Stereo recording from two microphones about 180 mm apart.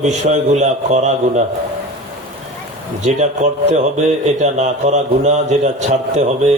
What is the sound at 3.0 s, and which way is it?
A man's voice, 40° right (ahead or behind).